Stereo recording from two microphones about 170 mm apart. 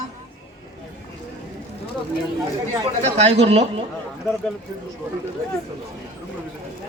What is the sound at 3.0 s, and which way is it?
Speech, 35° right (ahead or behind).